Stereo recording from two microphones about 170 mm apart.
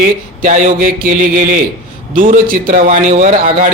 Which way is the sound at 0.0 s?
50° right (ahead or behind).